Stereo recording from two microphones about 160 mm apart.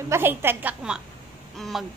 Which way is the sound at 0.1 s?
15° right (ahead or behind).